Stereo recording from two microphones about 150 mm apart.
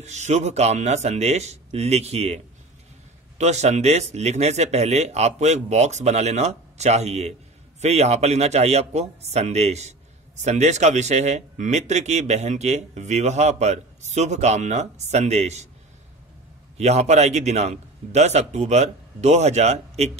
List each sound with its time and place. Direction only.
0.0 s speech: 50° right (ahead or behind)
16.7 s speech: 45° right (ahead or behind)